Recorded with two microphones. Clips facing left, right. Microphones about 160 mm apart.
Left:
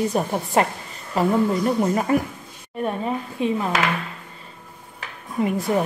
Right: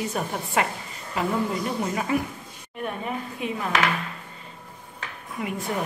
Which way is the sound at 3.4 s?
30° left (ahead or behind).